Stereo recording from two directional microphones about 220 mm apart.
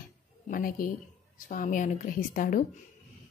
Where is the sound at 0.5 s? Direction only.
40° left (ahead or behind).